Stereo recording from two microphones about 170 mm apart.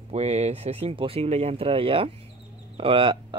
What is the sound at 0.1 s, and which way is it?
Speech, 40° right (ahead or behind).